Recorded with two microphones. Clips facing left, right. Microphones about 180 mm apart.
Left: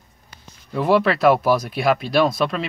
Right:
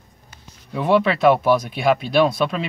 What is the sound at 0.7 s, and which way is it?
Speech, 5° left (ahead or behind).